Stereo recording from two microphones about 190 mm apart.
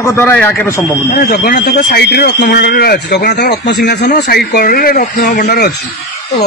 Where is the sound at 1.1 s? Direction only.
50° left (ahead or behind).